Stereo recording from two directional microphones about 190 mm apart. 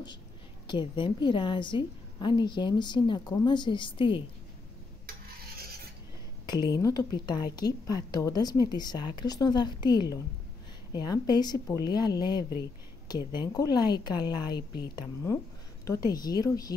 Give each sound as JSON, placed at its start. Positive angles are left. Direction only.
{"t": 0.7, "sound": "a woman's voice", "side_deg": 25}
{"t": 6.5, "sound": "a woman's voice", "side_deg": 20}